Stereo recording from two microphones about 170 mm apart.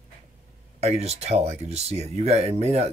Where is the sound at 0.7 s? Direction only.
40° right (ahead or behind).